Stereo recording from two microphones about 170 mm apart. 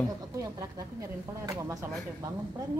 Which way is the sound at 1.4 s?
20° right (ahead or behind).